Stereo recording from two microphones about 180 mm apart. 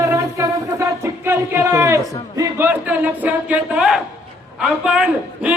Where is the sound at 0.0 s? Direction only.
15° right (ahead or behind).